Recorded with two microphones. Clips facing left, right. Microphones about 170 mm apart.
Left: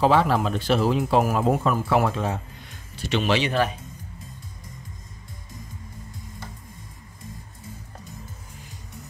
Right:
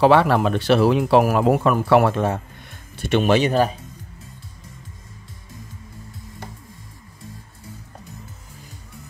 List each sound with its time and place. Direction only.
0.0 s a man's voice: 70° right (ahead or behind); by 3.7 s 40° right (ahead or behind)